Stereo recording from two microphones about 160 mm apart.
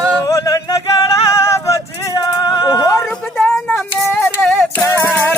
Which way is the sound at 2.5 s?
25° left (ahead or behind).